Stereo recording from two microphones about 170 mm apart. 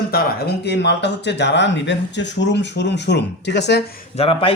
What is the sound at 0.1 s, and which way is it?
Speech, 70° left (ahead or behind).